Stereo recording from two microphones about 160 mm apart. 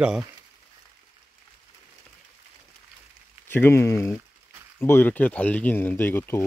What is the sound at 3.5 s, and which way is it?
Speech, 15° left (ahead or behind).